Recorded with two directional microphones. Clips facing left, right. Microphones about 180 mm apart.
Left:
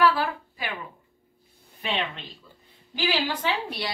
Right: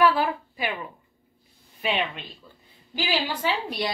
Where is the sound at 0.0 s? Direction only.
15° right (ahead or behind).